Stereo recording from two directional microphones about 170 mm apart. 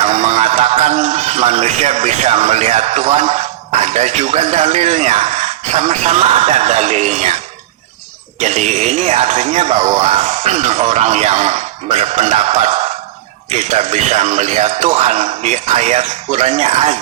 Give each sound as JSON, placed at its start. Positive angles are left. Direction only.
{"t": 0.0, "sound": "a man's voice", "side_deg": -40}
{"t": 8.4, "sound": "speech", "side_deg": -45}